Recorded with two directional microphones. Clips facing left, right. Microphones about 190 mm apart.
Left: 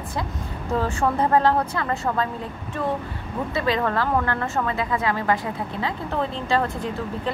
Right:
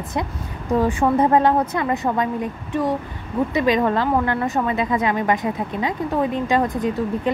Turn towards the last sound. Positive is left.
turn(degrees=-15)  # may be behind; listen again after turning